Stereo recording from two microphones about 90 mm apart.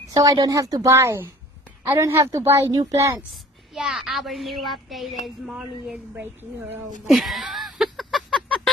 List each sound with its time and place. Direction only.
0.1 s speech: 40° right (ahead or behind)
0.9 s a woman's voice: 30° right (ahead or behind)
3.7 s speech: 5° right (ahead or behind)
7.1 s a sound: centre (ahead or behind)